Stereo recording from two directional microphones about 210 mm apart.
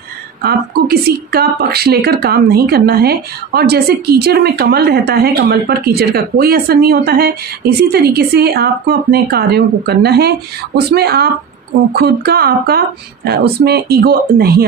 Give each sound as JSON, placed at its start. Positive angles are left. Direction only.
{"t": 0.4, "sound": "a woman's voice", "side_deg": -50}